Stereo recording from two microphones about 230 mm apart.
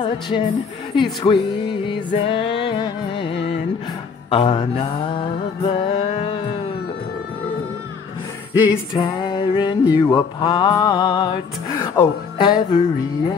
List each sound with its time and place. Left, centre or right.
0.0 s music: left
5.6 s a sound: left
8.5 s music: centre
11.8 s speech: left